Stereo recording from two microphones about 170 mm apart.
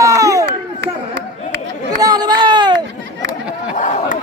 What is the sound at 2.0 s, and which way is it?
Chatter, 25° right (ahead or behind).